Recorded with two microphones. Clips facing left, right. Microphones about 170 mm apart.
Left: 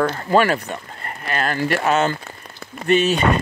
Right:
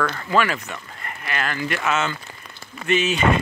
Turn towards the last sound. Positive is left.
turn(degrees=35)  # may be behind; listen again after turning